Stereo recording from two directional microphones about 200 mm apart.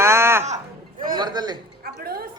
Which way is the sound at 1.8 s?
50° right (ahead or behind).